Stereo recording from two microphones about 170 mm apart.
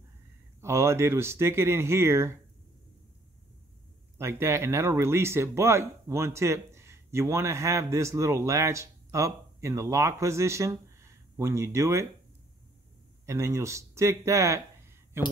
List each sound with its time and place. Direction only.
0.6 s speech: 15° right (ahead or behind)
4.2 s speech: 15° right (ahead or behind)
13.2 s speech: 15° right (ahead or behind)